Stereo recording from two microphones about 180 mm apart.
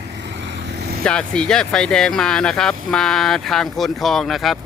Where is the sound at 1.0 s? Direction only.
5° left (ahead or behind).